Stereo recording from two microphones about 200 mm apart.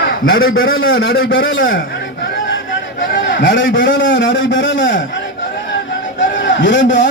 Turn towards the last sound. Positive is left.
turn(degrees=65)  # may be behind; listen again after turning